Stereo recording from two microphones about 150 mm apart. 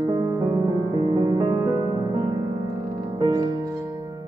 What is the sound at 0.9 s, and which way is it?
Music, 35° right (ahead or behind).